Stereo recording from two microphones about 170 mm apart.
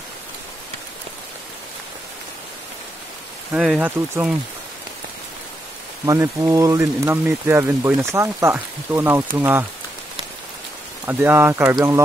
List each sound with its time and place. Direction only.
3.5 s speech: 5° right (ahead or behind)
6.0 s speech: 15° right (ahead or behind)
11.1 s speech: 15° right (ahead or behind)